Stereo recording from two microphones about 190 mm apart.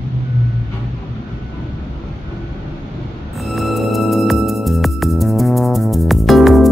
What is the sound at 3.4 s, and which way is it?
Music, centre (ahead or behind).